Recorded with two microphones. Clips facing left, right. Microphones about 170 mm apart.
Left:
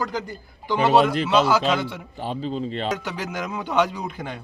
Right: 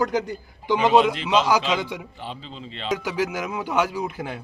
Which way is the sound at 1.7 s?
15° right (ahead or behind).